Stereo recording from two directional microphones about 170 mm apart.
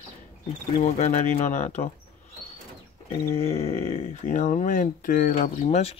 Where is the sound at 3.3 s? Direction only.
35° left (ahead or behind).